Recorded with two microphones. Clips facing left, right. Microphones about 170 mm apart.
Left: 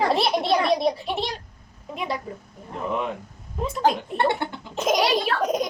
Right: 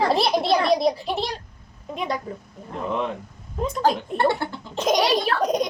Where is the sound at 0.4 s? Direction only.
35° right (ahead or behind).